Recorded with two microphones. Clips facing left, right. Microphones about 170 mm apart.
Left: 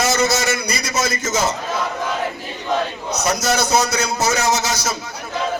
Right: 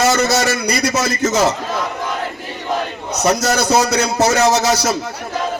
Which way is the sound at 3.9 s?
65° right (ahead or behind).